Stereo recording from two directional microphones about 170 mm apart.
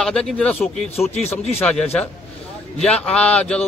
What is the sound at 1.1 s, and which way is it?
Speech, 40° left (ahead or behind).